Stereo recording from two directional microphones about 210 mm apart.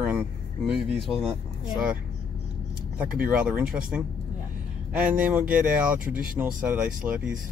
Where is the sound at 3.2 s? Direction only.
5° right (ahead or behind).